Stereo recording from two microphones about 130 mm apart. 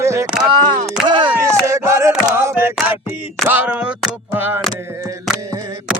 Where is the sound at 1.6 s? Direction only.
20° right (ahead or behind).